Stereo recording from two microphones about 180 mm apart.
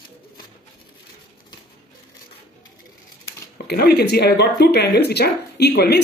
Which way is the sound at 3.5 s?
60° left (ahead or behind).